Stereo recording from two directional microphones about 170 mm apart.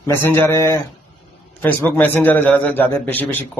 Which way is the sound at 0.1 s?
15° left (ahead or behind).